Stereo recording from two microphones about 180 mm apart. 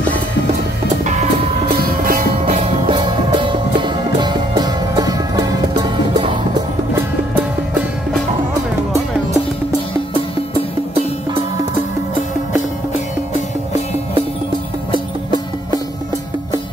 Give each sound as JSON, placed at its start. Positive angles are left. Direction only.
{"t": 1.7, "sound": "music", "side_deg": -55}
{"t": 3.1, "sound": "music", "side_deg": -25}